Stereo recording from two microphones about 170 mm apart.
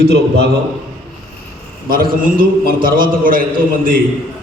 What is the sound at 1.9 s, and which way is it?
A man's voice, 55° right (ahead or behind).